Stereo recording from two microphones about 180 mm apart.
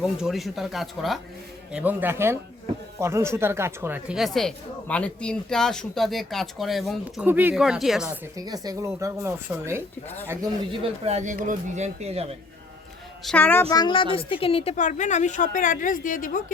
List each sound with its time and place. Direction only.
0.0 s speech: 5° right (ahead or behind)
8.4 s speech: 20° right (ahead or behind)
13.2 s a woman's voice: 10° left (ahead or behind); by 16.4 s 50° left (ahead or behind)